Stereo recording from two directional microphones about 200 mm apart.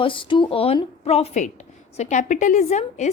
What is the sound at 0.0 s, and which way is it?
A woman's voice, 25° left (ahead or behind).